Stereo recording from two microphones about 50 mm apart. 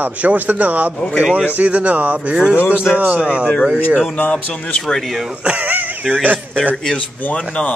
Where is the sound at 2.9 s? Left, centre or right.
Right.